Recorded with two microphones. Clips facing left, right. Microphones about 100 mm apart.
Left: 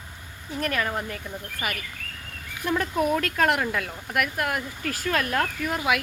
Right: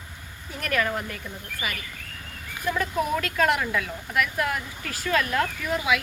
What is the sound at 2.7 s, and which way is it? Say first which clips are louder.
Speech: left 3 dB; 40° left (ahead or behind).